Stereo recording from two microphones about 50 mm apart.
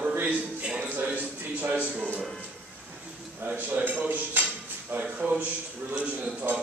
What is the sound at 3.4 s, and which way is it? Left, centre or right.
Speech, right.